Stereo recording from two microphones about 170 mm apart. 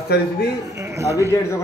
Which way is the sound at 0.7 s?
15° right (ahead or behind).